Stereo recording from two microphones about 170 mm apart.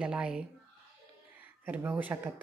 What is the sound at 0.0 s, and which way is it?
Speech, 5° right (ahead or behind).